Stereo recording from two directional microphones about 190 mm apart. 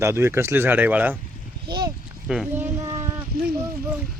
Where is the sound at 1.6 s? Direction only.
25° right (ahead or behind).